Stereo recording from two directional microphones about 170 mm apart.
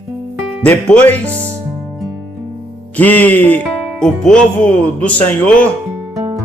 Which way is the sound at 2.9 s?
10° left (ahead or behind).